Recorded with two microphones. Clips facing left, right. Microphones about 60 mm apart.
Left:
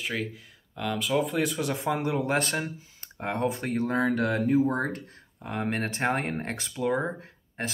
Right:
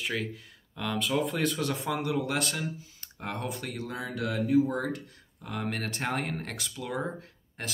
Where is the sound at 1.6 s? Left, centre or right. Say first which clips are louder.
Left 3 dB; left.